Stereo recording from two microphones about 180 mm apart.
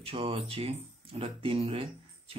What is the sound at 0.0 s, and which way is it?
Speech, 30° right (ahead or behind).